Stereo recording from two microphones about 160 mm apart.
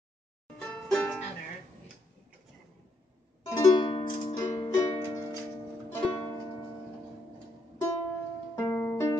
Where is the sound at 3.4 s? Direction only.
20° left (ahead or behind).